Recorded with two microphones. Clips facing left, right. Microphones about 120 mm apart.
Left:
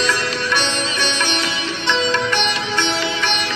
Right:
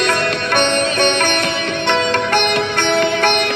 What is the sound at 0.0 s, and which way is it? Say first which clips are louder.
Sitar: right 4 dB; 55° right (ahead or behind).